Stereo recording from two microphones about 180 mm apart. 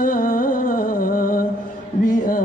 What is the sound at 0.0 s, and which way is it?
Music, 50° left (ahead or behind).